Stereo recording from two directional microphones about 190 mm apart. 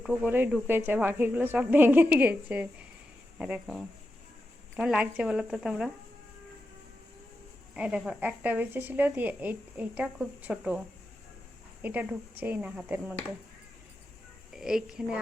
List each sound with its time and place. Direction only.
0.0 s a woman's voice: 5° right (ahead or behind)
7.7 s speech: 5° right (ahead or behind)
14.5 s a woman's voice: centre (ahead or behind)